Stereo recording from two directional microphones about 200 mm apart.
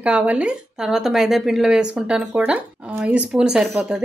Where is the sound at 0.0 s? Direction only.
5° right (ahead or behind).